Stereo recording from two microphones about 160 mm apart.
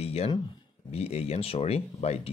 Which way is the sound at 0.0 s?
40° left (ahead or behind).